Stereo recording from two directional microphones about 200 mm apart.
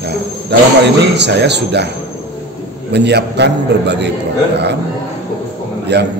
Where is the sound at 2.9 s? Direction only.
55° right (ahead or behind).